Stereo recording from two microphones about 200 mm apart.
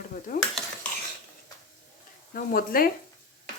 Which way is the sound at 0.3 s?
40° left (ahead or behind).